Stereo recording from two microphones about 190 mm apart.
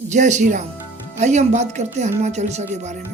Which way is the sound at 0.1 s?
40° right (ahead or behind).